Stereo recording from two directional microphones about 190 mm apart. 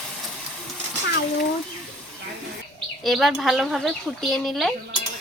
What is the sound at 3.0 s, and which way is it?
Speech, centre (ahead or behind).